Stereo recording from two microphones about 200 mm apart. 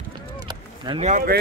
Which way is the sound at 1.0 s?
40° right (ahead or behind).